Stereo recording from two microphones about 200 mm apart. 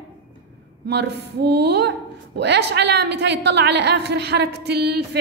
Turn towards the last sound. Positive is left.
turn(degrees=-55)  # may be behind; listen again after turning